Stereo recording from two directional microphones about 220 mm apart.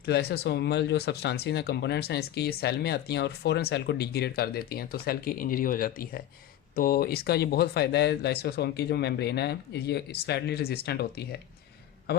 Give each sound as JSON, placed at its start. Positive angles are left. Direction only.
{"t": 0.0, "sound": "speech", "side_deg": 45}